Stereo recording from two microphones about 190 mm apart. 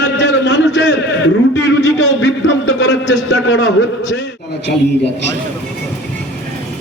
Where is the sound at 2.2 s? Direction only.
70° left (ahead or behind).